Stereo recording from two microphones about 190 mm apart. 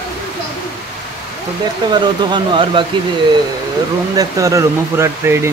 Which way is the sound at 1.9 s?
25° right (ahead or behind).